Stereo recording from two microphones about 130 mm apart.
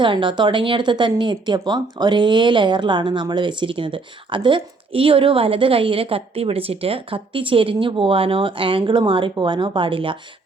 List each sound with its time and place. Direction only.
0.0 s speech: 40° right (ahead or behind)